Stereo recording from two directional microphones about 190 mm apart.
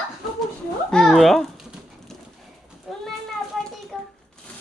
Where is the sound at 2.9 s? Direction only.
Centre (ahead or behind).